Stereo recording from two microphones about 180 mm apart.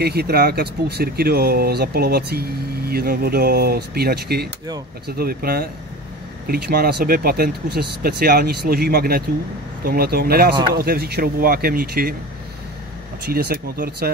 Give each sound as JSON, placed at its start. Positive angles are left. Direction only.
{"t": 0.0, "sound": "speech", "side_deg": -60}
{"t": 13.3, "sound": "speech", "side_deg": -60}